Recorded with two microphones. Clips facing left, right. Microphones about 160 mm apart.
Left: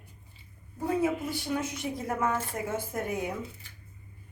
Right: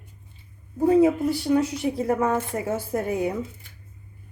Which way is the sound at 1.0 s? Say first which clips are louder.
Right 9 dB; 35° right (ahead or behind).